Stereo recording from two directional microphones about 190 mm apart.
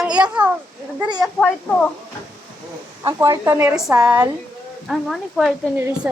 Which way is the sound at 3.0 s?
15° right (ahead or behind).